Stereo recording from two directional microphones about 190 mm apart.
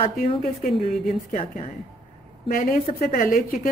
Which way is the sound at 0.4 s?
35° left (ahead or behind).